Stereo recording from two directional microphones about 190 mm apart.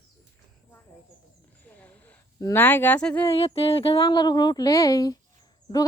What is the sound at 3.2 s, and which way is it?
Speech, 30° left (ahead or behind).